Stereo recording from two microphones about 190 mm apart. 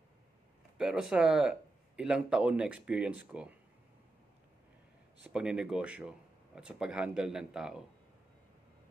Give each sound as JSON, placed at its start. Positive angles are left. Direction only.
{"t": 0.7, "sound": "speech", "side_deg": -5}
{"t": 5.2, "sound": "speech", "side_deg": -5}